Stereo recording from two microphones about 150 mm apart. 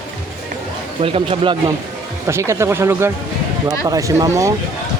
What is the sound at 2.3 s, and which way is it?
Speech, 15° right (ahead or behind).